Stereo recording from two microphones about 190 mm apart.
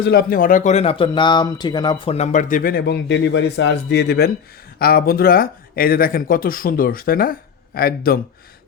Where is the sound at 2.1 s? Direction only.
40° left (ahead or behind).